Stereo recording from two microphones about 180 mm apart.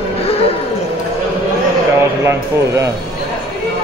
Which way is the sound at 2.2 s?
15° right (ahead or behind).